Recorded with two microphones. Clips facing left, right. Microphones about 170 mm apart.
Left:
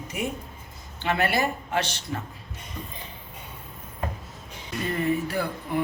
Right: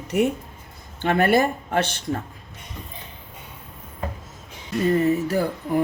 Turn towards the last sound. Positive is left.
turn(degrees=-40)  # may be behind; listen again after turning